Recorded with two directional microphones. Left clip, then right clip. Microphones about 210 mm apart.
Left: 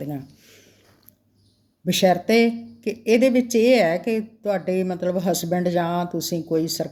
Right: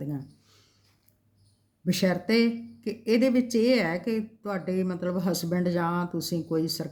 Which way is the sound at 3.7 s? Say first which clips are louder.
Left 8 dB; 15° right (ahead or behind).